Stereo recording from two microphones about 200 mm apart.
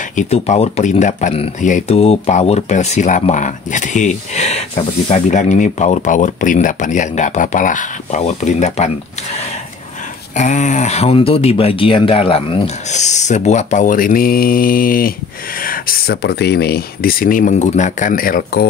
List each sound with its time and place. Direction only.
0.1 s speech: 40° left (ahead or behind)
10.3 s speech: 40° left (ahead or behind)